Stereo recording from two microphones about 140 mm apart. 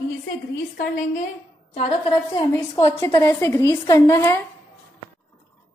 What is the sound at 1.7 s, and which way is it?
Speech, 45° left (ahead or behind).